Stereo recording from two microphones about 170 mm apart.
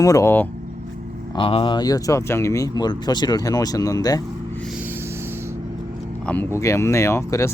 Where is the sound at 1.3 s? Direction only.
30° left (ahead or behind).